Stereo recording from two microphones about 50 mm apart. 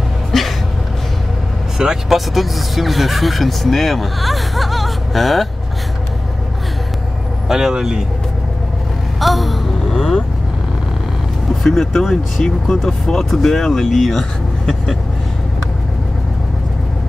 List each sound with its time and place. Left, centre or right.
0.3 s a sound: centre
1.8 s speech: centre
2.1 s speech: centre
7.4 s speech: centre
9.2 s vehicle: centre
11.6 s speech: centre